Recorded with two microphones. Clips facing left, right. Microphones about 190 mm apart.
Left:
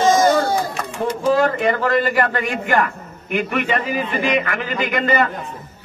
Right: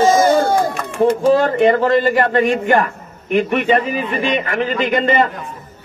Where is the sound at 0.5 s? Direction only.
50° right (ahead or behind).